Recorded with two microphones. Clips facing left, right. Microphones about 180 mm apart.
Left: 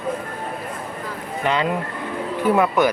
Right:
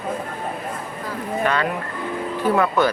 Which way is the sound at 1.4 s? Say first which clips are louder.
Left 2 dB; 20° left (ahead or behind).